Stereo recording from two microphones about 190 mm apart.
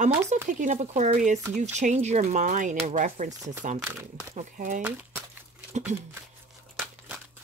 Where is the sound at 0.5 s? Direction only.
40° right (ahead or behind).